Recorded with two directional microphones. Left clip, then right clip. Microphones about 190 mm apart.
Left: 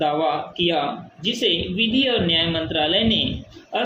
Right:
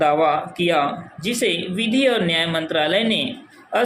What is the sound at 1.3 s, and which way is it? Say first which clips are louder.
Speech: even; 25° right (ahead or behind).